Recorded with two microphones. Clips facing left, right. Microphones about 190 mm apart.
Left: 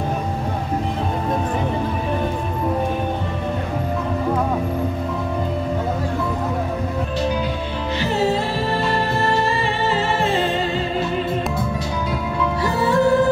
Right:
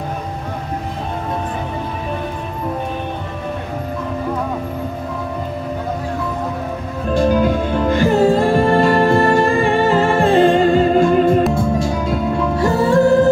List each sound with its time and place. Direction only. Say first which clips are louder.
7.2 s music: right 10 dB; 50° right (ahead or behind)